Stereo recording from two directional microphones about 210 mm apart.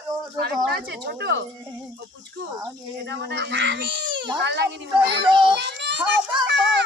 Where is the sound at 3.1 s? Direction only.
55° right (ahead or behind).